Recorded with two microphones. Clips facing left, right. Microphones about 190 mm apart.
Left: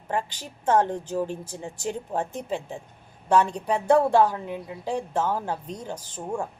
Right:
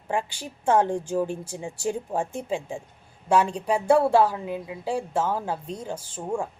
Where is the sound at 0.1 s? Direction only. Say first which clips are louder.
Right 1 dB; 10° right (ahead or behind).